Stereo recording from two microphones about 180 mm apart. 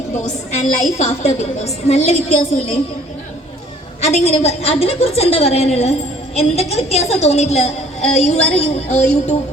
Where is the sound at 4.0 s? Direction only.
40° left (ahead or behind).